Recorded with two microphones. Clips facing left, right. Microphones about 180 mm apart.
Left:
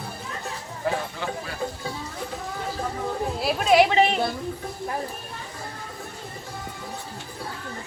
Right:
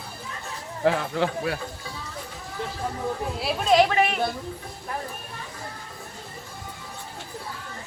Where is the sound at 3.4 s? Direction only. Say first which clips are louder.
Left 1 dB; 5° left (ahead or behind).